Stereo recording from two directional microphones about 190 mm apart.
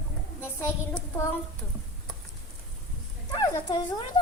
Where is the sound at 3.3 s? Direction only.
20° left (ahead or behind).